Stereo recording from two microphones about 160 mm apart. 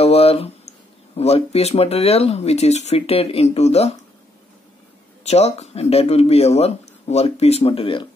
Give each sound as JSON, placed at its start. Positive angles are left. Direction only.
{"t": 0.0, "sound": "speech", "side_deg": 40}
{"t": 5.2, "sound": "speech", "side_deg": 45}